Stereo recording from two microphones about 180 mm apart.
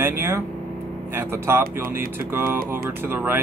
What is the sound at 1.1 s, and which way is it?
Speech, 15° right (ahead or behind).